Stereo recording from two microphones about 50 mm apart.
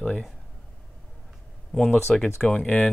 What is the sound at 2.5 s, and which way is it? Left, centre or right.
Speech, left.